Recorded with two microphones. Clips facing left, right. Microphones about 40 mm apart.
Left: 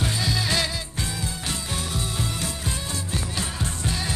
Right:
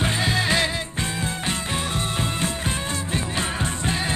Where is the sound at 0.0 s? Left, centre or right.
Right.